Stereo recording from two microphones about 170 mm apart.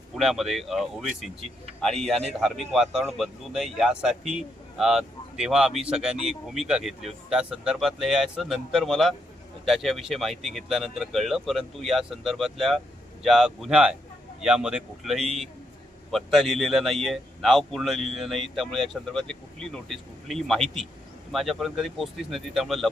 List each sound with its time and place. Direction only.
0.2 s speech: centre (ahead or behind)
1.4 s speech: 35° right (ahead or behind)
1.8 s speech: centre (ahead or behind)